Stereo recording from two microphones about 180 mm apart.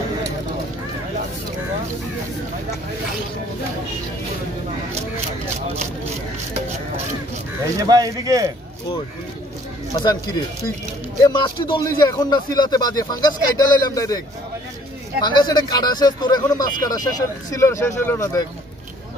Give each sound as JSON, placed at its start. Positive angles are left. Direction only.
{"t": 7.9, "sound": "speech", "side_deg": -20}
{"t": 9.9, "sound": "speech", "side_deg": 20}
{"t": 15.2, "sound": "speech", "side_deg": 25}